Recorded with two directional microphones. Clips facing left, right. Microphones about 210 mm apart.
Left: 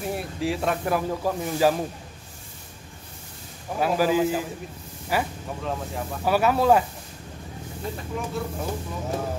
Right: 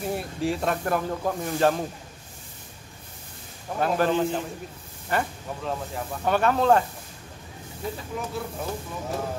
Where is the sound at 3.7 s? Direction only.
5° left (ahead or behind).